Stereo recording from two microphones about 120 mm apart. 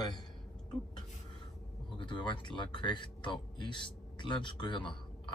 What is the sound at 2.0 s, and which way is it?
Speech, 45° left (ahead or behind).